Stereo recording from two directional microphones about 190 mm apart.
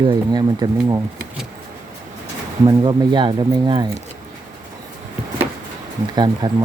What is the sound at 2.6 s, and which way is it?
Speech, 20° right (ahead or behind).